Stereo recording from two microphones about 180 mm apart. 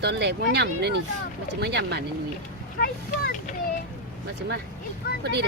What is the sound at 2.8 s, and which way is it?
Speech, 60° left (ahead or behind).